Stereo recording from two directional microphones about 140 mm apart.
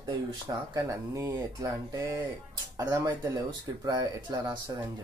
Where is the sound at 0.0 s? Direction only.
30° right (ahead or behind).